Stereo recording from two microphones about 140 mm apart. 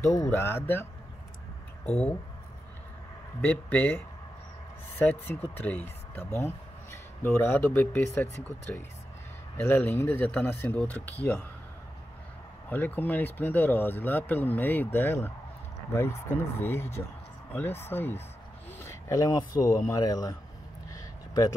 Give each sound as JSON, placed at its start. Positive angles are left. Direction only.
{"t": 0.0, "sound": "speech", "side_deg": 20}
{"t": 3.3, "sound": "speech", "side_deg": 10}
{"t": 12.6, "sound": "speech", "side_deg": 15}
{"t": 20.9, "sound": "a sound", "side_deg": 25}